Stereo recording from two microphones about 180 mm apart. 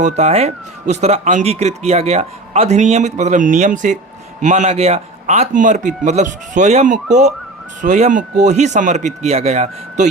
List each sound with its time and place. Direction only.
0.0 s speech: 40° right (ahead or behind)